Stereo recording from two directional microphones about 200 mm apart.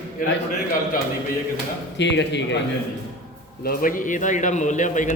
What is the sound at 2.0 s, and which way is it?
Speech, 60° left (ahead or behind).